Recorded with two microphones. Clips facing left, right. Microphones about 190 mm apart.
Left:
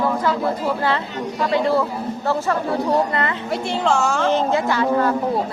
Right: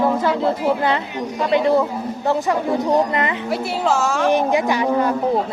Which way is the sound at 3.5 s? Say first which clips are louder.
Left 1 dB; 5° right (ahead or behind).